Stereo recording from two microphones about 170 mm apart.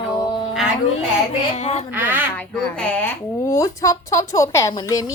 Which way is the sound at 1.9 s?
10° right (ahead or behind).